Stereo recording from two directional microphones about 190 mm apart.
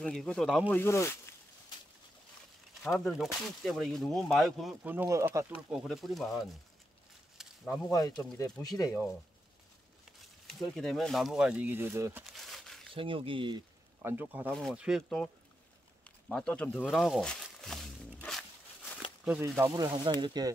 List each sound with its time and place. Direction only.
0.0 s speech: 5° left (ahead or behind)
0.7 s speech: 10° left (ahead or behind)
2.8 s speech: 5° left (ahead or behind); by 5.5 s 15° right (ahead or behind)
5.7 s speech: centre (ahead or behind)
7.3 s a sound: centre (ahead or behind)
7.9 s speech: 15° left (ahead or behind)
10.4 s speech: centre (ahead or behind)
12.3 s a sound: centre (ahead or behind)
12.9 s speech: 30° right (ahead or behind)
14.0 s speech: 10° right (ahead or behind); by 16.8 s 5° left (ahead or behind)
16.8 s a sound: centre (ahead or behind)
19.2 s speech: 10° right (ahead or behind)